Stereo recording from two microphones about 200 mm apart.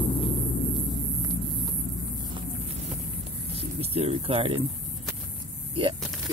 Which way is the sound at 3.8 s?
30° right (ahead or behind).